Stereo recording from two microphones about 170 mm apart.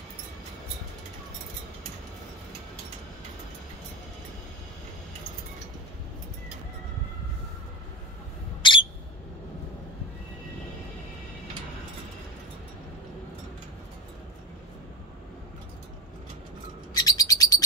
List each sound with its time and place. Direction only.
8.6 s owl: 30° left (ahead or behind)
16.9 s bird: 20° left (ahead or behind)